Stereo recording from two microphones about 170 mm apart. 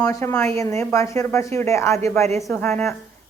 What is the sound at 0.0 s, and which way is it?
A woman's voice, 20° left (ahead or behind).